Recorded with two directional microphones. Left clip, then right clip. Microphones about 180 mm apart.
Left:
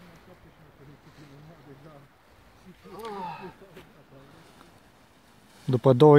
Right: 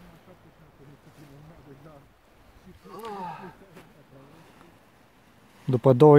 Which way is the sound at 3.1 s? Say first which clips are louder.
Even; 35° right (ahead or behind).